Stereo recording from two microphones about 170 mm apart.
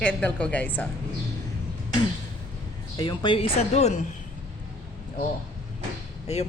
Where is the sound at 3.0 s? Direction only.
30° left (ahead or behind).